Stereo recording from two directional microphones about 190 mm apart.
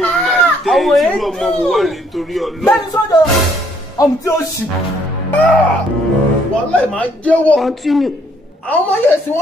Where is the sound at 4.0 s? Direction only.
20° left (ahead or behind).